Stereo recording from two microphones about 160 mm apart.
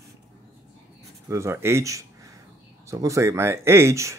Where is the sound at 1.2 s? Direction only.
15° right (ahead or behind).